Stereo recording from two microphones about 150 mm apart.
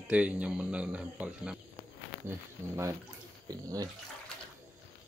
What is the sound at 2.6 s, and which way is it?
Speech, 15° right (ahead or behind).